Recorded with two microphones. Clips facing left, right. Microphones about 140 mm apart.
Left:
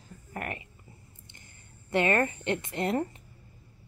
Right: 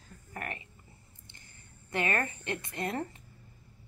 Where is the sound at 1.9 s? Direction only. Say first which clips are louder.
Left 6 dB; 25° left (ahead or behind).